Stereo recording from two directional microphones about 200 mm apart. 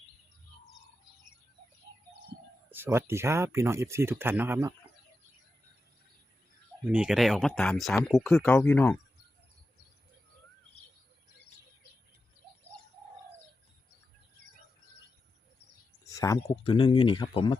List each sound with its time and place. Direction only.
2.6 s speech: 10° right (ahead or behind)
6.9 s speech: 5° right (ahead or behind)
16.0 s a sound: 15° left (ahead or behind)
16.4 s speech: 25° left (ahead or behind)